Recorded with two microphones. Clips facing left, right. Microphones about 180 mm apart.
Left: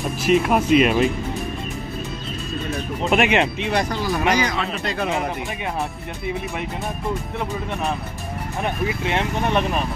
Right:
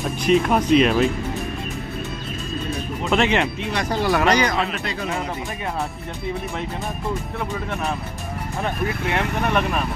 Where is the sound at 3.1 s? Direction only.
15° left (ahead or behind).